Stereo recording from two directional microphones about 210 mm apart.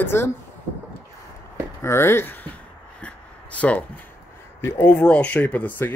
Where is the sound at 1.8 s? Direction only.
10° left (ahead or behind).